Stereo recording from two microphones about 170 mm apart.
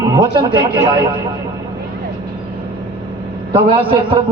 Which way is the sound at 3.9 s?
30° right (ahead or behind).